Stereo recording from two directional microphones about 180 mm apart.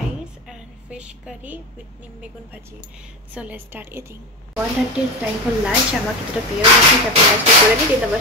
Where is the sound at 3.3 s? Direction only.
10° right (ahead or behind).